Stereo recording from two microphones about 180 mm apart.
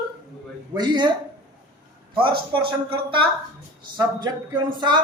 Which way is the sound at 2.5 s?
30° right (ahead or behind).